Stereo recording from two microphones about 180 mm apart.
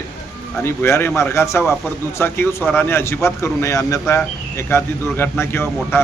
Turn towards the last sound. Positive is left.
turn(degrees=15)  # may be behind; listen again after turning